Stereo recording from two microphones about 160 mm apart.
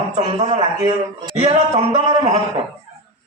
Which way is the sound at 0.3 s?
45° right (ahead or behind).